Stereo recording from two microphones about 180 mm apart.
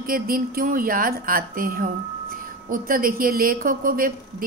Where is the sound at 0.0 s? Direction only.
50° right (ahead or behind).